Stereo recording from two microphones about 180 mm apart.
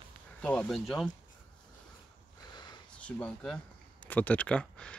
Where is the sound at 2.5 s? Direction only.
25° left (ahead or behind).